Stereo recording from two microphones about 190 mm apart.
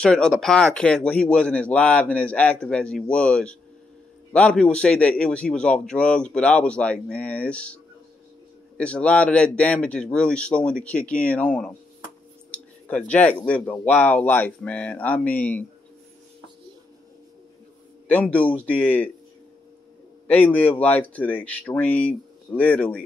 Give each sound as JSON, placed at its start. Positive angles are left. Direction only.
{"t": 0.0, "sound": "speech", "side_deg": 5}
{"t": 12.4, "sound": "a sound", "side_deg": 5}
{"t": 13.1, "sound": "speech", "side_deg": 5}
{"t": 18.0, "sound": "a man's voice", "side_deg": 10}
{"t": 20.2, "sound": "speech", "side_deg": 10}